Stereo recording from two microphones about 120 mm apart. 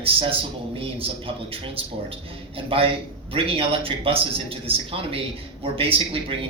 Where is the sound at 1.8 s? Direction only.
50° right (ahead or behind).